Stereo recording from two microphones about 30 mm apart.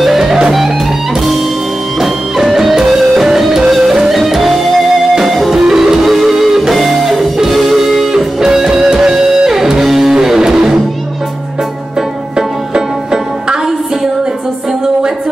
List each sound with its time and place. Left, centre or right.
2.0 s music: centre
6.0 s music: centre
8.4 s music: centre
12.4 s music: right